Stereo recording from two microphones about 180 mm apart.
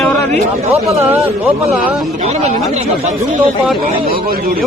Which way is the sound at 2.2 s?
35° right (ahead or behind).